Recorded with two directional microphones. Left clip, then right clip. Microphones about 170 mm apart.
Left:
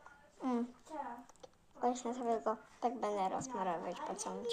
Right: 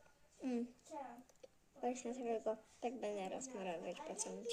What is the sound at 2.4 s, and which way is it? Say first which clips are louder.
A woman's voice: left 6 dB; 20° right (ahead or behind).